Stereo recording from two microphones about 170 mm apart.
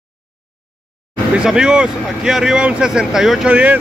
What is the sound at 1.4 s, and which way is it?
Speech, 5° right (ahead or behind).